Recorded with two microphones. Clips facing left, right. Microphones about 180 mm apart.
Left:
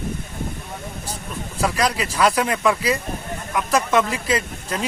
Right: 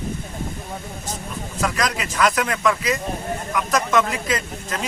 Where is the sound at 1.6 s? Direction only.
30° left (ahead or behind).